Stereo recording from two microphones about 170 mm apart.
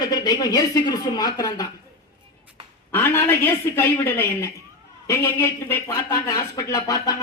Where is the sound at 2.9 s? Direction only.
10° left (ahead or behind).